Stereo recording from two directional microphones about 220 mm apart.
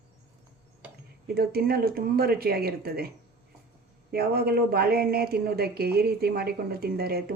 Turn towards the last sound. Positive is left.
turn(degrees=-45)  # may be behind; listen again after turning